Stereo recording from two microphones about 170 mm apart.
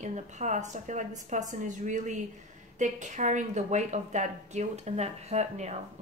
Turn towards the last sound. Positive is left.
turn(degrees=-40)  # may be behind; listen again after turning